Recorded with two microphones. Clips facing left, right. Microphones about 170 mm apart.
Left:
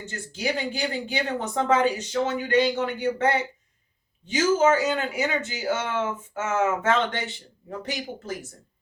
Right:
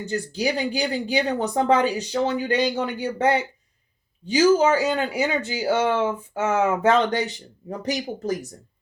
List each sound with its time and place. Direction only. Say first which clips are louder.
0.0 s speech: right 6 dB; 35° right (ahead or behind)